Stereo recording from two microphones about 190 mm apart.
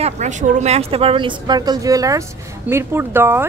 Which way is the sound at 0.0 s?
40° right (ahead or behind).